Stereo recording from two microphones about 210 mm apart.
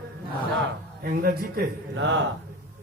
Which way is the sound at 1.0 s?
45° right (ahead or behind).